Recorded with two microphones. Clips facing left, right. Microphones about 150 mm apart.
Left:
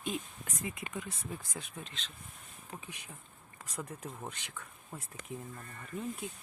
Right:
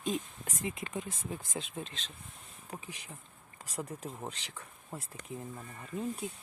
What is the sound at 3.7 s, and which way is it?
Speech, 30° right (ahead or behind).